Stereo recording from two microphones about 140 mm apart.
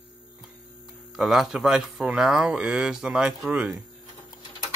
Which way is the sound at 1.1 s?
Centre (ahead or behind).